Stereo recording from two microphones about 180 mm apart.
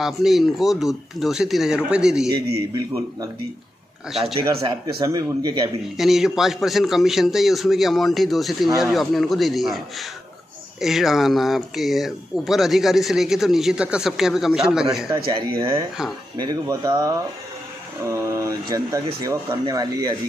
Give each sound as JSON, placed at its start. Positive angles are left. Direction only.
{"t": 0.0, "sound": "speech", "side_deg": 0}
{"t": 4.6, "sound": "speech", "side_deg": -30}
{"t": 5.9, "sound": "speech", "side_deg": 0}
{"t": 15.0, "sound": "speech", "side_deg": -20}